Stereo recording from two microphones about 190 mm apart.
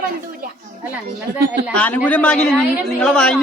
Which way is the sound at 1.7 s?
5° left (ahead or behind).